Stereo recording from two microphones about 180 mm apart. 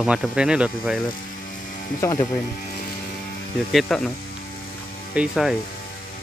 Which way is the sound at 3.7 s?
Centre (ahead or behind).